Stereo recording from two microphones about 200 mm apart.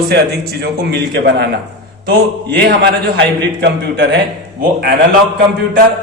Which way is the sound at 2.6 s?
50° right (ahead or behind).